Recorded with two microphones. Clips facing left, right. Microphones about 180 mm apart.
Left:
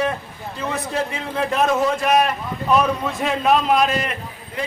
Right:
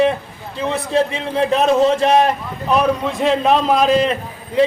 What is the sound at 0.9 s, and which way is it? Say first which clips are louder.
A man's voice: right 7 dB; 20° right (ahead or behind).